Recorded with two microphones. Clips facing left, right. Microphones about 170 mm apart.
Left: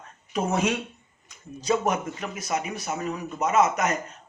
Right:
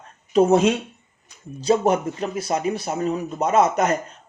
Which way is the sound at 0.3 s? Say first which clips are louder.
Right 9 dB; 30° right (ahead or behind).